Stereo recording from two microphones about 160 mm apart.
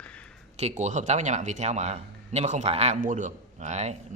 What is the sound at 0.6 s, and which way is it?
Speech, 45° right (ahead or behind).